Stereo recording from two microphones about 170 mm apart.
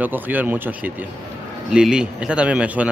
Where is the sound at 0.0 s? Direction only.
10° right (ahead or behind).